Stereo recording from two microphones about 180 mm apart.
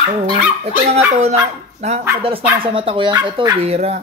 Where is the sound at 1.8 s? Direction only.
35° right (ahead or behind).